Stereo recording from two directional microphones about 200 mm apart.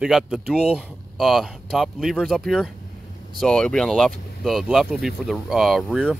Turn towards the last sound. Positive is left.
turn(degrees=0)  # may be behind; listen again after turning